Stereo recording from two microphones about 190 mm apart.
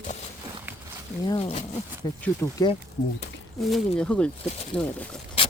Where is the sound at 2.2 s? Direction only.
15° left (ahead or behind).